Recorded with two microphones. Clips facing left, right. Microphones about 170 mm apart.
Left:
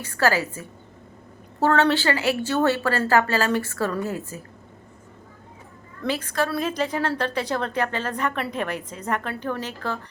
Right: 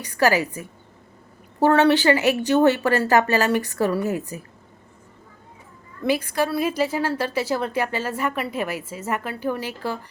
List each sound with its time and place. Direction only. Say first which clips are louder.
0.0 s speech: right 2 dB; 15° right (ahead or behind)
6.0 s speech: right 3 dB; 10° right (ahead or behind)